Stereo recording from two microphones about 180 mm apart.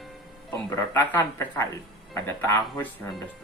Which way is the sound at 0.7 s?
10° left (ahead or behind).